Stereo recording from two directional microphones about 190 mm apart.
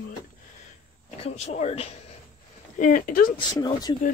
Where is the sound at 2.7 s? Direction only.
45° left (ahead or behind).